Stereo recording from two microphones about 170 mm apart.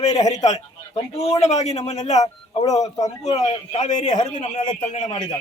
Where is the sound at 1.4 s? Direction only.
40° left (ahead or behind).